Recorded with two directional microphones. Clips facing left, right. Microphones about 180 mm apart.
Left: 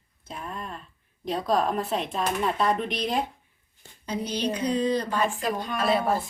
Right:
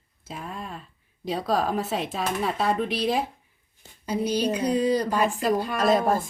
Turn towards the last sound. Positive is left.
turn(degrees=-45)  # may be behind; listen again after turning